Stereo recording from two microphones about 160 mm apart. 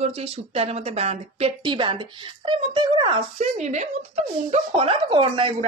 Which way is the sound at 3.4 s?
45° right (ahead or behind).